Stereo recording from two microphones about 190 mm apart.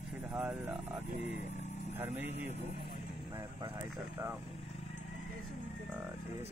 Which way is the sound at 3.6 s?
20° right (ahead or behind).